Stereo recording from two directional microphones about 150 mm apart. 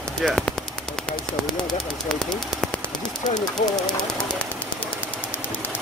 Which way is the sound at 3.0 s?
30° left (ahead or behind).